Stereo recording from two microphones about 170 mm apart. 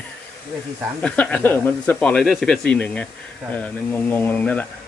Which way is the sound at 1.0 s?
5° left (ahead or behind).